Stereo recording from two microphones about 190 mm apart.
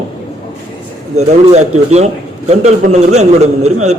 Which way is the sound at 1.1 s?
35° right (ahead or behind).